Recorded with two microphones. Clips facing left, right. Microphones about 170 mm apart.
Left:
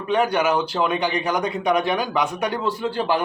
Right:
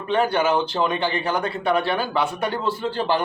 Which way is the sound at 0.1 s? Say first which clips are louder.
Even; 15° left (ahead or behind).